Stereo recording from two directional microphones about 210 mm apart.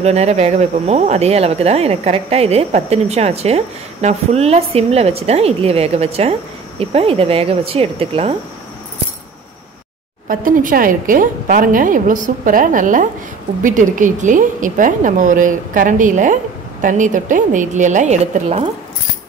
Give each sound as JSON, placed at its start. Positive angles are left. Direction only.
{"t": 0.0, "sound": "speech", "side_deg": -30}
{"t": 10.2, "sound": "speech", "side_deg": -40}